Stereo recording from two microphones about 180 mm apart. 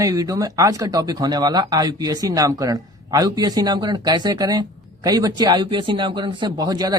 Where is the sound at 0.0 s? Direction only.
20° right (ahead or behind).